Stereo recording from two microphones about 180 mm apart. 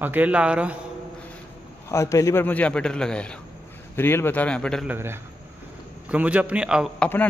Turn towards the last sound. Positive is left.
turn(degrees=-5)  # may be behind; listen again after turning